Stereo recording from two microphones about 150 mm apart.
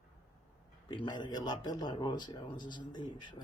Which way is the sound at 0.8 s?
30° left (ahead or behind).